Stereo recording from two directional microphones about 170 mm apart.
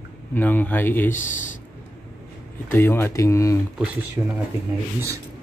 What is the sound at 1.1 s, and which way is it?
Speech, 50° left (ahead or behind).